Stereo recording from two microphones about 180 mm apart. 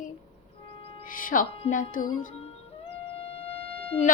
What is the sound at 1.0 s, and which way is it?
Music, 50° left (ahead or behind).